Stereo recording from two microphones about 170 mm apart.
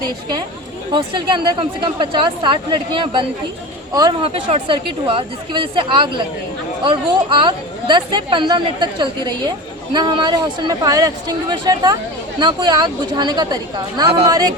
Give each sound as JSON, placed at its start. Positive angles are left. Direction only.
{"t": 0.9, "sound": "speech", "side_deg": -30}